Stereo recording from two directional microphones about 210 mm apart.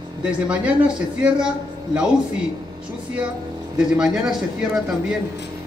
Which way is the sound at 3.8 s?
5° right (ahead or behind).